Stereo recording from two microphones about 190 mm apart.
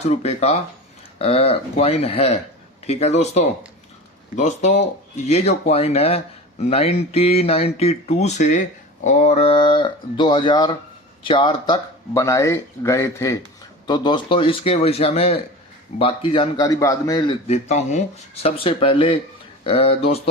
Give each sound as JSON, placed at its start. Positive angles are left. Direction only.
{"t": 0.0, "sound": "speech", "side_deg": 35}
{"t": 17.5, "sound": "speech", "side_deg": 35}